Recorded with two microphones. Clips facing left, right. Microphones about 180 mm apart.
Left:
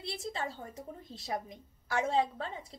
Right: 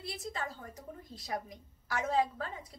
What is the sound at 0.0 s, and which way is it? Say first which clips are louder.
Speech: left 2 dB; 30° left (ahead or behind).